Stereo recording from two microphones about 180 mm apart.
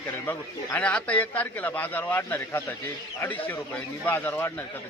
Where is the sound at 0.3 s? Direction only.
10° left (ahead or behind).